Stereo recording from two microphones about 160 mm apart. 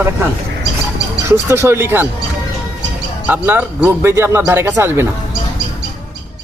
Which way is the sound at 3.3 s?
10° right (ahead or behind).